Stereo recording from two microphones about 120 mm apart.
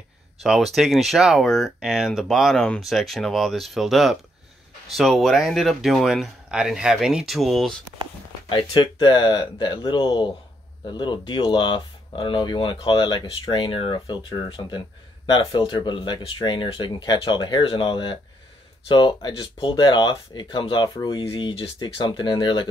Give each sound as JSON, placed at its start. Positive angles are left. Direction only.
{"t": 0.4, "sound": "speech", "side_deg": 0}
{"t": 8.5, "sound": "speech", "side_deg": 40}
{"t": 15.2, "sound": "speech", "side_deg": 40}